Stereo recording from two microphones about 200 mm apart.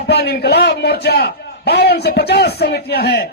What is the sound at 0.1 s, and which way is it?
A man's voice, 55° left (ahead or behind).